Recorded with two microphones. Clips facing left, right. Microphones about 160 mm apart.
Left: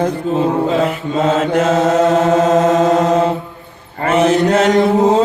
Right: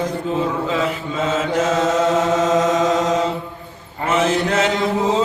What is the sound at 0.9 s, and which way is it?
Mantra, 60° left (ahead or behind).